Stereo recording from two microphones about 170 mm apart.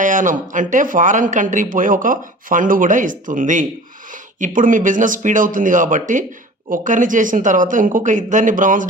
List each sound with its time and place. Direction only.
0.0 s speech: 50° right (ahead or behind)